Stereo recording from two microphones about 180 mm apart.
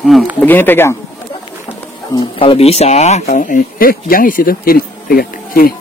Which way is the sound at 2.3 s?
30° left (ahead or behind).